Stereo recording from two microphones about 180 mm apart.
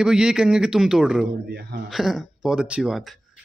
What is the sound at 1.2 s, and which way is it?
Speech, 65° right (ahead or behind).